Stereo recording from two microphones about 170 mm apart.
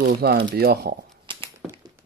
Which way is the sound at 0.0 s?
70° right (ahead or behind).